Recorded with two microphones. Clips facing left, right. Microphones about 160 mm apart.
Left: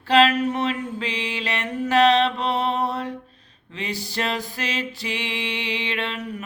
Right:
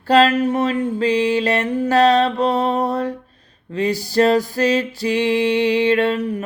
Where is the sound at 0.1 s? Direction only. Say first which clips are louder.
Right 4 dB; 40° right (ahead or behind).